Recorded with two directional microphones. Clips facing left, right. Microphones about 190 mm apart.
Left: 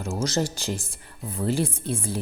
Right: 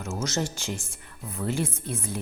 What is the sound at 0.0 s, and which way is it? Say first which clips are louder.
Speech: left 3 dB; 30° left (ahead or behind).